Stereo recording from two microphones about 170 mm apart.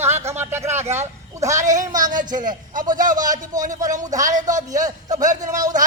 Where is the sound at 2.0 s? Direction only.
50° right (ahead or behind).